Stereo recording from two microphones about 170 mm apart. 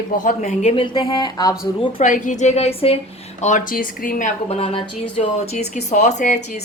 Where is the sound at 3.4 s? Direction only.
45° left (ahead or behind).